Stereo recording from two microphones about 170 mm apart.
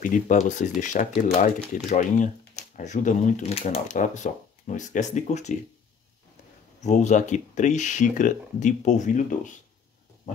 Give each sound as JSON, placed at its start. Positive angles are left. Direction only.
{"t": 0.0, "sound": "speech", "side_deg": 50}
{"t": 6.8, "sound": "speech", "side_deg": 45}